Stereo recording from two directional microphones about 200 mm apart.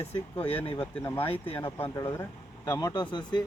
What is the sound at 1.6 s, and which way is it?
Speech, 10° left (ahead or behind).